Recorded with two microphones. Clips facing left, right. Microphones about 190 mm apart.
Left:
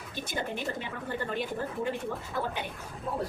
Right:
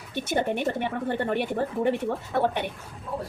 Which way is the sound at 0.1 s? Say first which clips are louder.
Right 9 dB; 65° right (ahead or behind).